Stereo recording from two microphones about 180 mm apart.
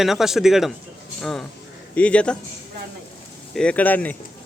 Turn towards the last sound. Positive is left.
turn(degrees=10)  # may be behind; listen again after turning